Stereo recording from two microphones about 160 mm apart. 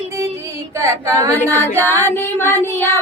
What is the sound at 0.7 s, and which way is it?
Child singing, 20° right (ahead or behind).